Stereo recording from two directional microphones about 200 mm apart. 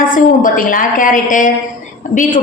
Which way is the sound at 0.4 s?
40° left (ahead or behind).